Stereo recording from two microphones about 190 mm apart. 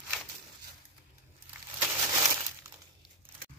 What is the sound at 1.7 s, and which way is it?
Crumpling, 15° right (ahead or behind).